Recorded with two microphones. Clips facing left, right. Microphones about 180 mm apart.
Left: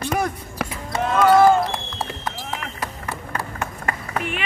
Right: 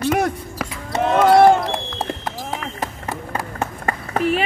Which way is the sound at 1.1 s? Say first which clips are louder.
Right 2 dB; 65° right (ahead or behind).